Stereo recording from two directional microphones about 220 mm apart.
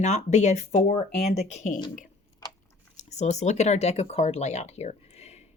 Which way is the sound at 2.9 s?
30° left (ahead or behind).